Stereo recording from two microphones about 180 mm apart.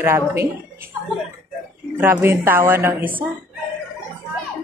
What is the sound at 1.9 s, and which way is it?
Speech, 10° right (ahead or behind).